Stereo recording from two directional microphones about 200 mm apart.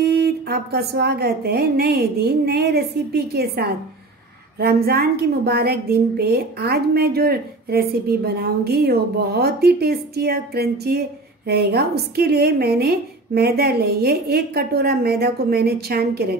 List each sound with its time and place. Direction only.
0.0 s a woman's voice: 55° right (ahead or behind)